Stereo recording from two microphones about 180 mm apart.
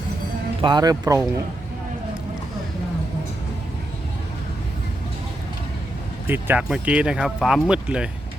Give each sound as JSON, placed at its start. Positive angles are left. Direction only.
{"t": 0.6, "sound": "speech", "side_deg": -25}
{"t": 6.2, "sound": "speech", "side_deg": -10}